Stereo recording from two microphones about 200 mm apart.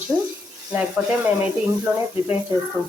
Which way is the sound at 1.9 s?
10° right (ahead or behind).